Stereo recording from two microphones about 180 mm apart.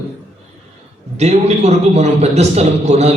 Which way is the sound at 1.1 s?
40° right (ahead or behind).